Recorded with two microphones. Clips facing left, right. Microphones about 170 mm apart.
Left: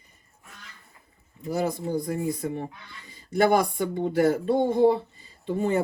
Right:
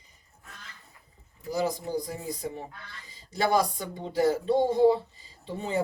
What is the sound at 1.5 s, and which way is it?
Speech, 55° left (ahead or behind).